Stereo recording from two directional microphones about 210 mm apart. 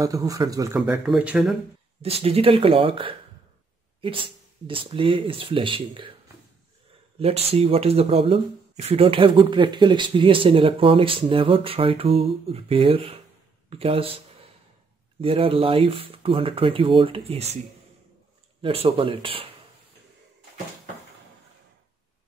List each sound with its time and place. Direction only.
0.0 s speech: 15° right (ahead or behind)
0.8 s speech: 5° right (ahead or behind)
2.0 s speech: 30° right (ahead or behind)
7.2 s speech: 30° right (ahead or behind)
15.1 s speech: 25° right (ahead or behind)
18.6 s speech: 25° right (ahead or behind)